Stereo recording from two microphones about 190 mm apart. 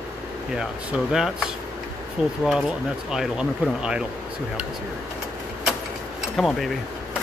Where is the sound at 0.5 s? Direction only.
5° right (ahead or behind).